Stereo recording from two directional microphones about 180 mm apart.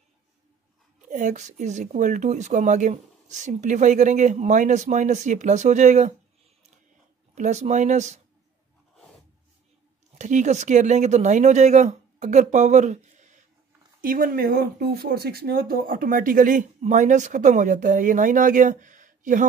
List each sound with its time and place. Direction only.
1.0 s speech: 45° right (ahead or behind)
7.3 s speech: 40° right (ahead or behind)
8.9 s a sound: 5° left (ahead or behind)
10.1 s speech: 40° right (ahead or behind)
14.0 s speech: 50° right (ahead or behind)